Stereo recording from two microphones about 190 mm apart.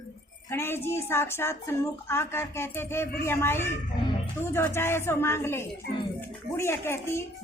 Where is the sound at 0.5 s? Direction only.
10° left (ahead or behind).